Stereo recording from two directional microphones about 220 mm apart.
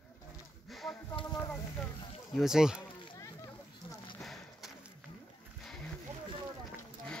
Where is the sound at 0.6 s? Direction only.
Centre (ahead or behind).